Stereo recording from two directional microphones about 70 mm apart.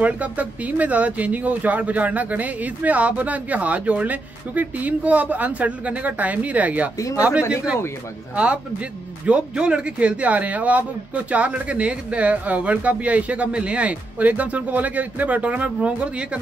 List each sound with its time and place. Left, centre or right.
0.0 s speech: right